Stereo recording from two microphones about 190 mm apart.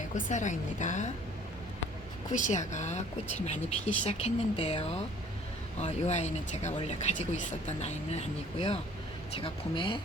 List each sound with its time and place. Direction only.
0.1 s speech: 40° left (ahead or behind)
2.3 s speech: 40° left (ahead or behind)